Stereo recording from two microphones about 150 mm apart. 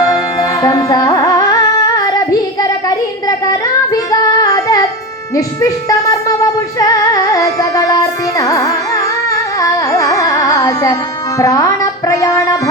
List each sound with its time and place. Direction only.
0.0 s carnatic music: 25° left (ahead or behind)
5.3 s music: 20° left (ahead or behind)
8.4 s carnatic music: 20° left (ahead or behind)
11.3 s music: 20° left (ahead or behind)